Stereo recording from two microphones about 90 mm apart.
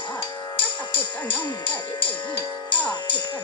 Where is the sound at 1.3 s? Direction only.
75° left (ahead or behind).